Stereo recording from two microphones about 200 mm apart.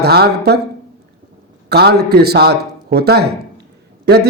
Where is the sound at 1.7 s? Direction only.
55° right (ahead or behind).